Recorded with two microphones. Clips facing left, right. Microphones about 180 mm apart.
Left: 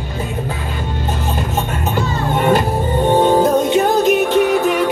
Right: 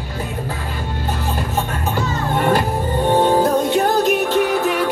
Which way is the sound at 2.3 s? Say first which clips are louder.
Left 3 dB; 20° left (ahead or behind).